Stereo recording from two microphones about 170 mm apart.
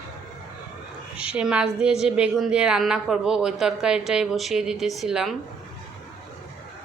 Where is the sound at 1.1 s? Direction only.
5° right (ahead or behind).